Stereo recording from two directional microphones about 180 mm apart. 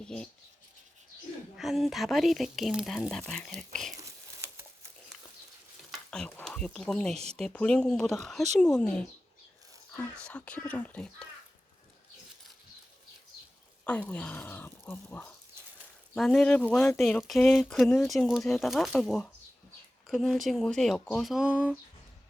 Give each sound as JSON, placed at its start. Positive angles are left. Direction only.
{"t": 0.0, "sound": "speech", "side_deg": 5}
{"t": 1.5, "sound": "speech", "side_deg": 0}
{"t": 3.9, "sound": "crumpling", "side_deg": -15}
{"t": 5.9, "sound": "speech", "side_deg": 5}
{"t": 14.1, "sound": "speech", "side_deg": 10}